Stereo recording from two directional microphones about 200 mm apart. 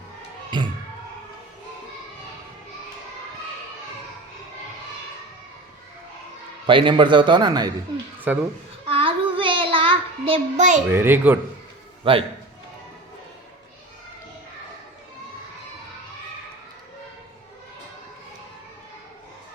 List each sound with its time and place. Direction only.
0.5 s a sound: 20° right (ahead or behind)
6.7 s a man's voice: 25° right (ahead or behind)
8.3 s a child's voice: 10° right (ahead or behind)
8.9 s child singing: 25° right (ahead or behind)
10.8 s a child's voice: 10° right (ahead or behind)
12.1 s a man's voice: 25° right (ahead or behind)